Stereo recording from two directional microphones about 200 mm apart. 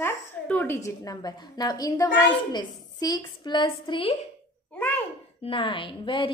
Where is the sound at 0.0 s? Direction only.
10° left (ahead or behind); by 4.2 s 25° left (ahead or behind).